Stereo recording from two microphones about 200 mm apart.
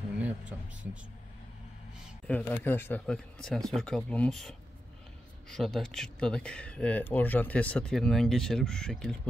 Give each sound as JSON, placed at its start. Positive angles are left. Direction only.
{"t": 2.2, "sound": "speech", "side_deg": 5}